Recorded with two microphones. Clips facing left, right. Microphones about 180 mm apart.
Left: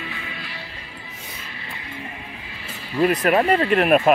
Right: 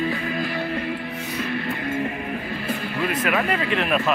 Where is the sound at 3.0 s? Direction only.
40° left (ahead or behind).